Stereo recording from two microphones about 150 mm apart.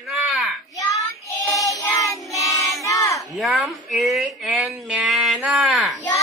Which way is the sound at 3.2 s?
Centre (ahead or behind).